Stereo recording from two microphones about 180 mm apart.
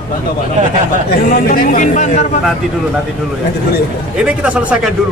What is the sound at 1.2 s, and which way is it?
Speech, 50° left (ahead or behind).